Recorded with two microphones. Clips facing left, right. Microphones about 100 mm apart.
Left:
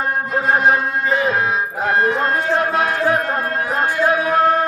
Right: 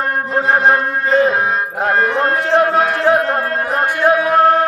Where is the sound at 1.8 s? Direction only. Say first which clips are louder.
Right 2 dB; 65° right (ahead or behind).